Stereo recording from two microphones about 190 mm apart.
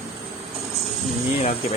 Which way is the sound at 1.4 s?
35° left (ahead or behind).